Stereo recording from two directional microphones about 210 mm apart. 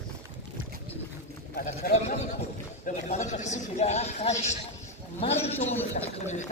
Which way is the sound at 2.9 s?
35° left (ahead or behind).